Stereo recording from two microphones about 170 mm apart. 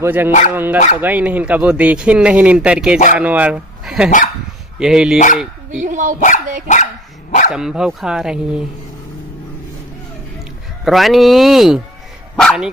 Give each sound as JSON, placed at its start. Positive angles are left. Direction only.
{"t": 0.0, "sound": "speech", "side_deg": -10}
{"t": 5.8, "sound": "speech", "side_deg": -50}
{"t": 6.7, "sound": "dog", "side_deg": 45}
{"t": 7.5, "sound": "speech", "side_deg": -5}
{"t": 10.9, "sound": "speech", "side_deg": 0}